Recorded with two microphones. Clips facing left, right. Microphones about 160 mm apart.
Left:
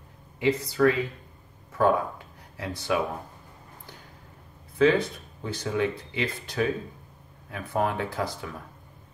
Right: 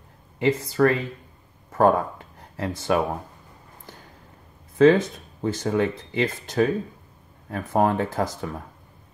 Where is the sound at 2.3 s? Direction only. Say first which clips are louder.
Right 8 dB; 50° right (ahead or behind).